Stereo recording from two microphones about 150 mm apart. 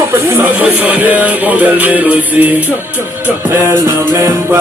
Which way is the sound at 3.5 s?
20° right (ahead or behind).